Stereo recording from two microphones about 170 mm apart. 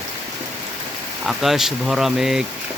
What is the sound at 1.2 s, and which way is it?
Speech, centre (ahead or behind).